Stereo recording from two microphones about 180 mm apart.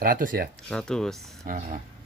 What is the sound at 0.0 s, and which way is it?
Speech, 50° right (ahead or behind).